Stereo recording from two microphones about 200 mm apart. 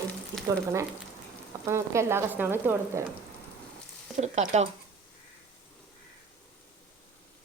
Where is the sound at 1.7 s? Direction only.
15° right (ahead or behind).